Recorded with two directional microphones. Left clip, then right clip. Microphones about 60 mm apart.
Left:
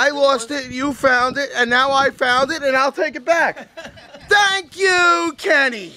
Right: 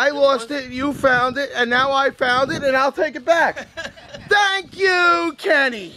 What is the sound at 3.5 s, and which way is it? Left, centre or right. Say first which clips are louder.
Speech: right 4 dB; right.